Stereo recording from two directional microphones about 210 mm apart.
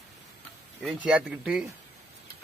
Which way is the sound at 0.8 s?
5° right (ahead or behind).